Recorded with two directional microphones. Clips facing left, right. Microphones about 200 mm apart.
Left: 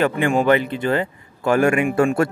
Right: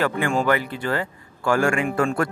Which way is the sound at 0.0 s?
20° left (ahead or behind).